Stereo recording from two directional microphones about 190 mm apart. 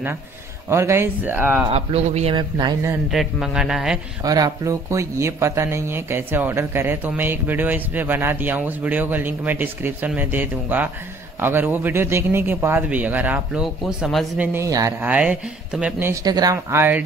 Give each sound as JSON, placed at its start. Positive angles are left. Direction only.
{"t": 0.7, "sound": "speech", "side_deg": -15}
{"t": 1.7, "sound": "a man's voice", "side_deg": -30}
{"t": 3.1, "sound": "speech", "side_deg": 0}
{"t": 4.2, "sound": "speech", "side_deg": -20}